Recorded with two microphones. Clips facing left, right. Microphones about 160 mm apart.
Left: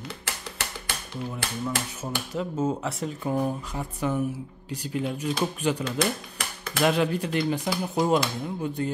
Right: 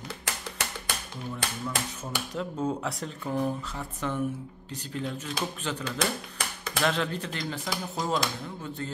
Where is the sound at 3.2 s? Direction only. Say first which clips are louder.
Left 2 dB; 15° left (ahead or behind).